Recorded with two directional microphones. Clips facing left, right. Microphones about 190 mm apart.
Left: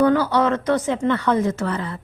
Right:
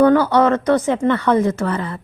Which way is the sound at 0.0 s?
55° right (ahead or behind).